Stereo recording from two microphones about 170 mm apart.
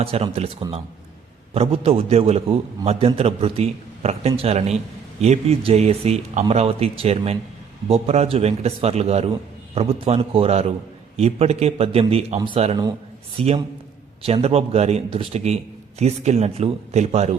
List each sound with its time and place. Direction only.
0.0 s a man's voice: 35° right (ahead or behind)
1.5 s a man's voice: 35° right (ahead or behind)